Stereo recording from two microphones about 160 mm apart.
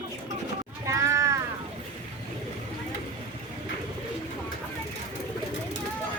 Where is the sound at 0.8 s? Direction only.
20° right (ahead or behind).